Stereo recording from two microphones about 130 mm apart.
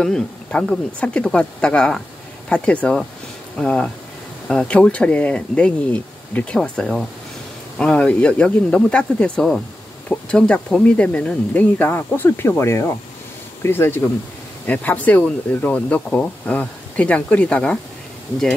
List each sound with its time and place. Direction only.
0.0 s speech: 5° left (ahead or behind)